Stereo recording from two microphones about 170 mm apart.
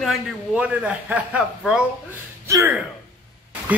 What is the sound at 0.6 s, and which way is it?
Speech, 10° right (ahead or behind).